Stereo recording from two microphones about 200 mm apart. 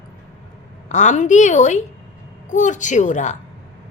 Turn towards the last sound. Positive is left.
turn(degrees=40)  # may be behind; listen again after turning